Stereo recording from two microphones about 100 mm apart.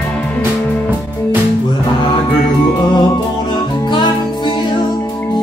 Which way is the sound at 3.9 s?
50° left (ahead or behind).